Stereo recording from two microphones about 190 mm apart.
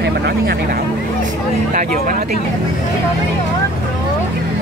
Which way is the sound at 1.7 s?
45° right (ahead or behind).